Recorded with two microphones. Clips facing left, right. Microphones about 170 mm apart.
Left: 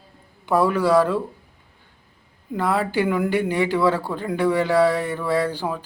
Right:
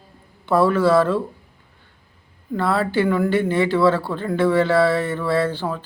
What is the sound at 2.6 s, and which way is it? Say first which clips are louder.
A man's voice: right 2 dB; 15° left (ahead or behind).